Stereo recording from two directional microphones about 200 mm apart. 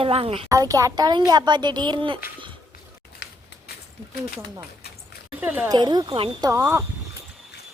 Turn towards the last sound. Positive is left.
turn(degrees=-15)  # may be behind; listen again after turning